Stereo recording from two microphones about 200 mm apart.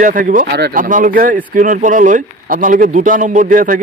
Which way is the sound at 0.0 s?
40° right (ahead or behind).